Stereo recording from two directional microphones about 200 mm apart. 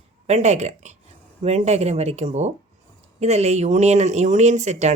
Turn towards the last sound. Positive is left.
turn(degrees=-35)  # may be behind; listen again after turning